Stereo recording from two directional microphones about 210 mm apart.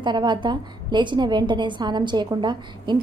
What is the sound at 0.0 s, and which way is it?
A woman's voice, 20° right (ahead or behind).